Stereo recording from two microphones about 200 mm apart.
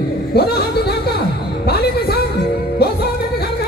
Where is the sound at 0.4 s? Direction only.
50° left (ahead or behind).